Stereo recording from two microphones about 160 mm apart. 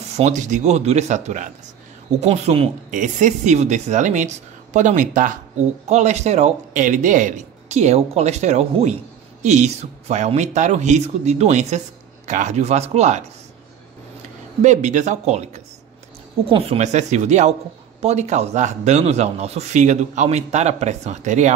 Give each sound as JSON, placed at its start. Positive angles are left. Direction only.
{"t": 0.1, "sound": "a man's voice", "side_deg": -45}
{"t": 14.6, "sound": "a man's voice", "side_deg": -45}